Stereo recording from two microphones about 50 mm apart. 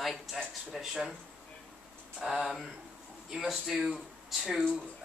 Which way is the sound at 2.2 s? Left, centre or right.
Centre.